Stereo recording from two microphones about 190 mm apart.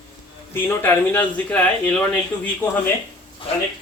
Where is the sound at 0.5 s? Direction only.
10° left (ahead or behind).